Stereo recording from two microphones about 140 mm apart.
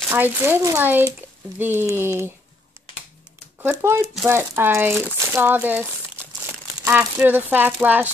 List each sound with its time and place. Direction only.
0.1 s speech: 15° right (ahead or behind)
3.8 s speech: 20° right (ahead or behind)